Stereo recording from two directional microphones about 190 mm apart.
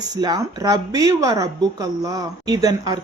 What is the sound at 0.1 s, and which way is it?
A woman's voice, 20° right (ahead or behind).